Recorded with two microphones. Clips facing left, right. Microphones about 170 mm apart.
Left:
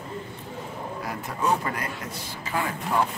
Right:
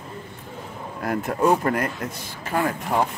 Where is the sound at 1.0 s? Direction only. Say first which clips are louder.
Right 8 dB; 55° right (ahead or behind).